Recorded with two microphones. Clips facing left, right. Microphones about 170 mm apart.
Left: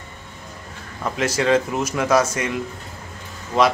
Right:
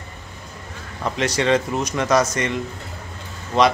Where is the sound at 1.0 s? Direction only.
5° left (ahead or behind).